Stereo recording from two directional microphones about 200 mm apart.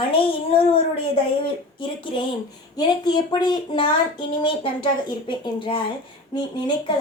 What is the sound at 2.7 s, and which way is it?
Speech, 20° left (ahead or behind).